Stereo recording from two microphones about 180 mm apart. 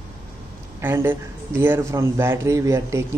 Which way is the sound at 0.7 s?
15° right (ahead or behind).